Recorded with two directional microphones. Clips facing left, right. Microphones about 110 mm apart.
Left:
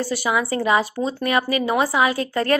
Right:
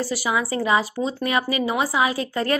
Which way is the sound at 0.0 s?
10° right (ahead or behind).